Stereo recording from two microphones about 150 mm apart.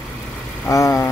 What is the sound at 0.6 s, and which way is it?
Speech, 20° left (ahead or behind).